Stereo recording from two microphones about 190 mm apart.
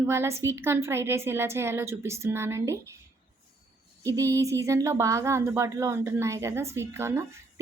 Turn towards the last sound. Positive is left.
turn(degrees=-15)  # may be behind; listen again after turning